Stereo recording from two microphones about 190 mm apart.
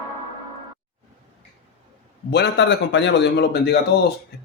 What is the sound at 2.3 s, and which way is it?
Speech, 65° left (ahead or behind).